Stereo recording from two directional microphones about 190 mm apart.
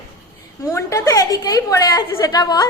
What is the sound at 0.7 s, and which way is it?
A woman's voice, 15° left (ahead or behind).